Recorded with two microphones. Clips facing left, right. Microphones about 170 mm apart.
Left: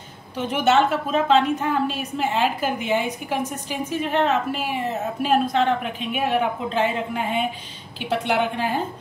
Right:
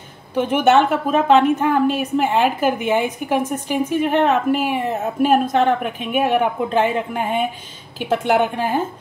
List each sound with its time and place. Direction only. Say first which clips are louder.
0.4 s a woman's voice: right 4 dB; 55° right (ahead or behind)